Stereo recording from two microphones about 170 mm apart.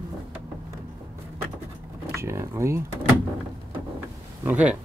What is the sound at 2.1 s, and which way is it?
Speech, 15° right (ahead or behind).